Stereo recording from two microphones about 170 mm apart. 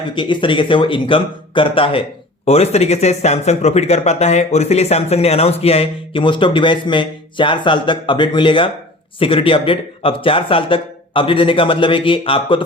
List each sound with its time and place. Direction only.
0.1 s speech: 30° left (ahead or behind)